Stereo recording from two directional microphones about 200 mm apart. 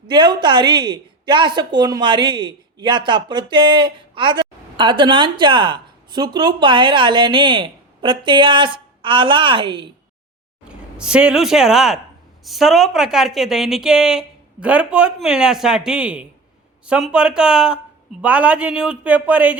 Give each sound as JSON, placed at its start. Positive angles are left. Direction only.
{"t": 0.1, "sound": "a woman's voice", "side_deg": -20}
{"t": 10.7, "sound": "a woman's voice", "side_deg": -5}